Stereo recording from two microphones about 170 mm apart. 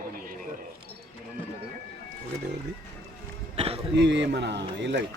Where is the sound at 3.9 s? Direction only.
90° right.